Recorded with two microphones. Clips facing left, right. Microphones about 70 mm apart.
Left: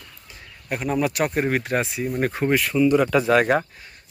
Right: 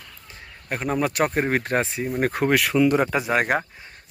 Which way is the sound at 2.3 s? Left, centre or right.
Right.